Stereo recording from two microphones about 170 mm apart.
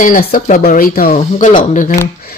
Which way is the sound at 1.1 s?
35° left (ahead or behind).